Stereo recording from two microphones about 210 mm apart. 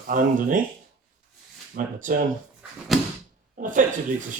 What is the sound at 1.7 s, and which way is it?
Speech, 40° right (ahead or behind).